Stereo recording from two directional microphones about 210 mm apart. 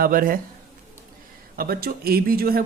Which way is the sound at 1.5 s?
45° right (ahead or behind).